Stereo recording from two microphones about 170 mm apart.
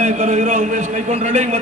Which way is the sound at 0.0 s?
45° right (ahead or behind).